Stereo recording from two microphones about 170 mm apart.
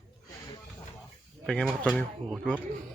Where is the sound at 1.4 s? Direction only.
5° left (ahead or behind).